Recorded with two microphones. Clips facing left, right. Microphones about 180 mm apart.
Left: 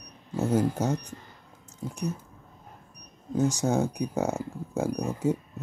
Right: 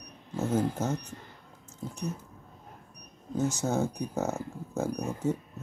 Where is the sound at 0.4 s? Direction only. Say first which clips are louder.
Left 3 dB; 10° left (ahead or behind).